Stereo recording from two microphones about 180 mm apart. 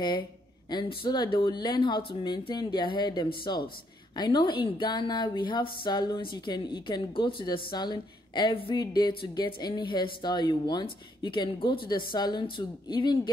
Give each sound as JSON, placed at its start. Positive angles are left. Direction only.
{"t": 0.7, "sound": "speech", "side_deg": 25}